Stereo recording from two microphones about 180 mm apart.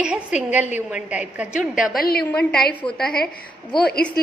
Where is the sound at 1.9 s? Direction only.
55° left (ahead or behind).